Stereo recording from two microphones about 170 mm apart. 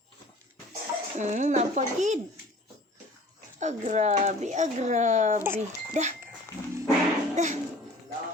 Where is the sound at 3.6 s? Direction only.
45° right (ahead or behind).